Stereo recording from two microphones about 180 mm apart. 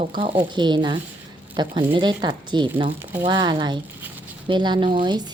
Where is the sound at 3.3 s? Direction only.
25° right (ahead or behind).